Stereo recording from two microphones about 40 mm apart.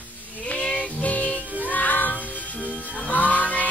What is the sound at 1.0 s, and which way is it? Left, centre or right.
Music, left.